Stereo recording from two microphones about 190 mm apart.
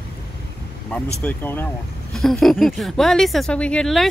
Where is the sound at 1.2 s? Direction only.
10° left (ahead or behind).